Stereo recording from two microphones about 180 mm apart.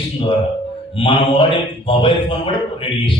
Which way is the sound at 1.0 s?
30° left (ahead or behind).